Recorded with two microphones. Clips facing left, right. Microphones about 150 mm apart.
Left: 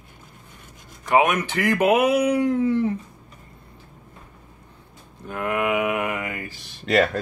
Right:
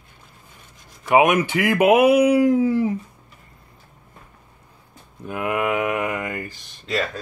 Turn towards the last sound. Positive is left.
turn(degrees=65)  # may be behind; listen again after turning